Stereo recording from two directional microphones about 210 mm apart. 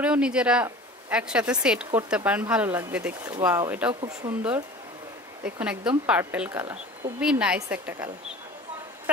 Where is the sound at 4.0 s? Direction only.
25° right (ahead or behind).